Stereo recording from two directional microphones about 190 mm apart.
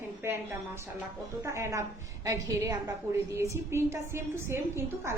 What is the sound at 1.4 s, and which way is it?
A woman's voice, 15° right (ahead or behind).